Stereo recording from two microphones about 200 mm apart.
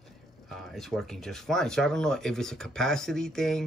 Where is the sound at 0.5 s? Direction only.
Centre (ahead or behind).